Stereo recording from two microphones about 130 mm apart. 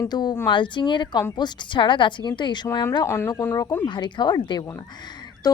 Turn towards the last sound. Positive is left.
turn(degrees=30)  # may be behind; listen again after turning